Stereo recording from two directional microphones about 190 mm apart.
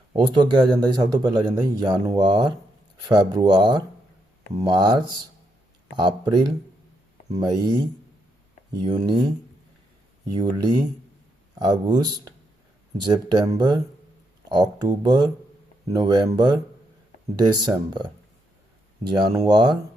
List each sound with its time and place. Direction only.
0.1 s speech: 25° right (ahead or behind)
9.0 s speech: 25° right (ahead or behind)
10.3 s speech: 20° right (ahead or behind)
19.1 s speech: 20° right (ahead or behind)